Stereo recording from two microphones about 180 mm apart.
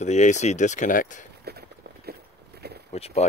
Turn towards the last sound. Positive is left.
turn(degrees=35)  # may be behind; listen again after turning